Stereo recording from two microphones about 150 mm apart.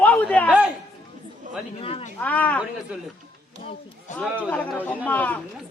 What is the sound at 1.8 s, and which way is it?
Speech, 40° left (ahead or behind).